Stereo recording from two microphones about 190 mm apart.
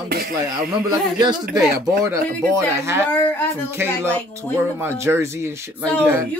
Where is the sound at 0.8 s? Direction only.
20° right (ahead or behind).